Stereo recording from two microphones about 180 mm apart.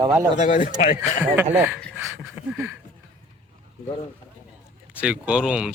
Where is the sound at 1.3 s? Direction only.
10° right (ahead or behind).